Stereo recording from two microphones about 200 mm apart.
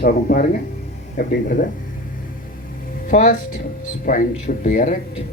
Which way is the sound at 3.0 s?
40° left (ahead or behind).